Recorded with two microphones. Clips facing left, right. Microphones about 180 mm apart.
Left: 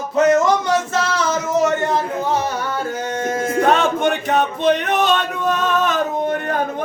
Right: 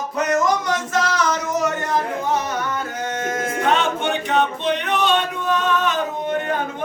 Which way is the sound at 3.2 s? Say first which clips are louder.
Left 5 dB; 30° left (ahead or behind).